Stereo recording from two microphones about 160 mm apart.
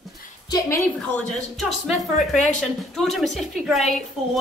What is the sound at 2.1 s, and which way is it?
Speech, 50° left (ahead or behind).